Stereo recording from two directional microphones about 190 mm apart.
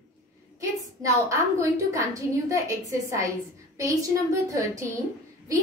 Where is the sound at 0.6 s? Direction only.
15° right (ahead or behind).